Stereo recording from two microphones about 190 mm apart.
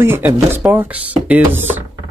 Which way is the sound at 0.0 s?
10° right (ahead or behind).